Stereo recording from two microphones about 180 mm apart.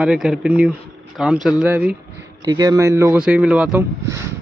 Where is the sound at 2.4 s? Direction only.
20° right (ahead or behind).